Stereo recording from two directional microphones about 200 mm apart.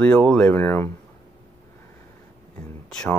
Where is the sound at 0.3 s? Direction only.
5° left (ahead or behind).